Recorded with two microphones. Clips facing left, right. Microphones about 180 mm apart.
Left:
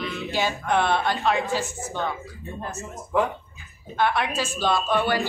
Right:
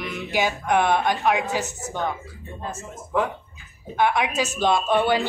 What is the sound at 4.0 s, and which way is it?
A woman's voice, 15° right (ahead or behind).